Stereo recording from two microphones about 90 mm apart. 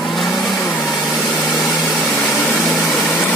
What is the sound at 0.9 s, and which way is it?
Vehicle, centre (ahead or behind).